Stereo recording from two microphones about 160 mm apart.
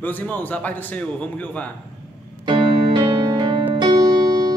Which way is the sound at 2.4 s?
30° right (ahead or behind).